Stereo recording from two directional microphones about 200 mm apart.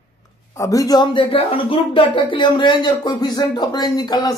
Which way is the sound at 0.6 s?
15° left (ahead or behind).